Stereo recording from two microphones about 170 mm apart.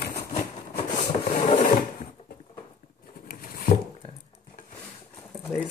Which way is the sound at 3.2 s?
60° left (ahead or behind).